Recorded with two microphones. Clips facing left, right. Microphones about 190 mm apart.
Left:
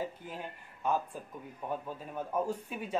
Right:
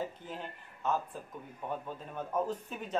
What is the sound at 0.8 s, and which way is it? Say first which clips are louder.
A man's voice: left 1 dB; 10° left (ahead or behind).